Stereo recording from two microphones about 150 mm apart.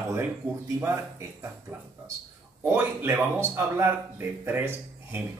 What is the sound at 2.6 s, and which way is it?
Speech, 15° right (ahead or behind).